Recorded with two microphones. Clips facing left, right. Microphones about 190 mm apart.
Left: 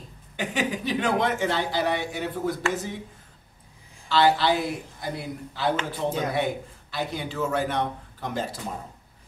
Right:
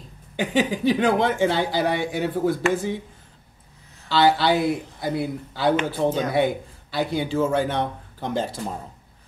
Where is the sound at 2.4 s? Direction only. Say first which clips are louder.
Right 5 dB; 25° right (ahead or behind).